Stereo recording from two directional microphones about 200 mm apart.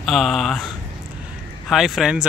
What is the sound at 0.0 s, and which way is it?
Speech, centre (ahead or behind).